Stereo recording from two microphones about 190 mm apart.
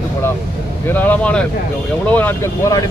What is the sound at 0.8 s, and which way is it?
Speech, 10° left (ahead or behind).